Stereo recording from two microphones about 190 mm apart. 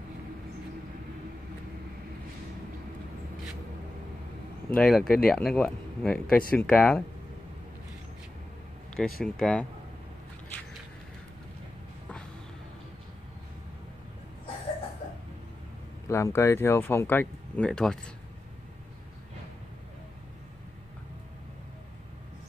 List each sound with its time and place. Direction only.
4.6 s speech: 5° left (ahead or behind)
8.9 s speech: 5° left (ahead or behind)
16.1 s speech: 15° left (ahead or behind)